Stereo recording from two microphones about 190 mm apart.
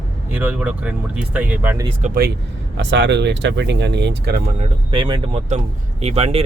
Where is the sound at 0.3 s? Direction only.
10° right (ahead or behind).